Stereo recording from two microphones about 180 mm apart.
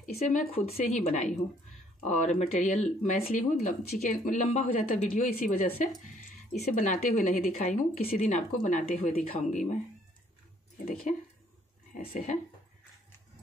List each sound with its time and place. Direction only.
0.0 s speech: 45° left (ahead or behind)
0.5 s speech: 35° left (ahead or behind); by 7.6 s 50° left (ahead or behind)
7.6 s speech: 35° left (ahead or behind)
11.9 s speech: 50° left (ahead or behind)